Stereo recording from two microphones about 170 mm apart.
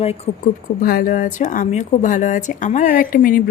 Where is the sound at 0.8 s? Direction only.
60° left (ahead or behind).